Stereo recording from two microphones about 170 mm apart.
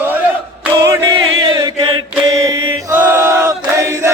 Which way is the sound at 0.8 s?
20° right (ahead or behind).